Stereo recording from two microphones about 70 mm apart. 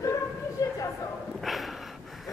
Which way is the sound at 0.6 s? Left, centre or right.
Left.